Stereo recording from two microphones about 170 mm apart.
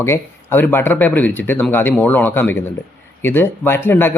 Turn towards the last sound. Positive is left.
turn(degrees=15)  # may be behind; listen again after turning